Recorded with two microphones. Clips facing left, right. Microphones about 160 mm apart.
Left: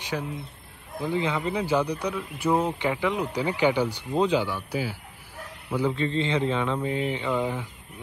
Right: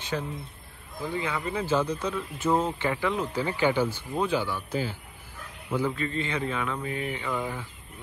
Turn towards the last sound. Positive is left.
turn(degrees=15)  # may be behind; listen again after turning